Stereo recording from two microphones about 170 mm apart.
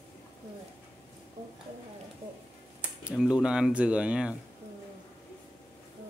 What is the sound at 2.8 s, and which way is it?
Speech, 5° right (ahead or behind).